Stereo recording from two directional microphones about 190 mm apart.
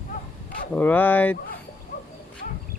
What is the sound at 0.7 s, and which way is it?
Speech, 10° left (ahead or behind).